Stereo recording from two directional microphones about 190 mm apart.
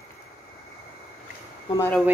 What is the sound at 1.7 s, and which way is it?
Speech, 15° left (ahead or behind).